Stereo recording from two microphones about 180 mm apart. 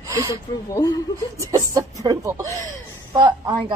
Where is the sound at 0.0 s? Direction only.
20° right (ahead or behind).